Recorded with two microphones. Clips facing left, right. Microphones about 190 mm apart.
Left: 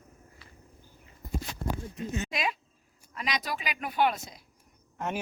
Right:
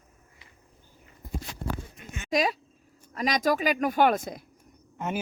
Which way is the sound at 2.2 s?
40° right (ahead or behind).